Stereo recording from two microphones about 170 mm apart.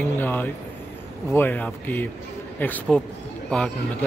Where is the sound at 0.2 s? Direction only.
10° left (ahead or behind).